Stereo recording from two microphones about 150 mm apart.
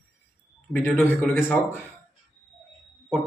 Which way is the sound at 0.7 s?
5° left (ahead or behind).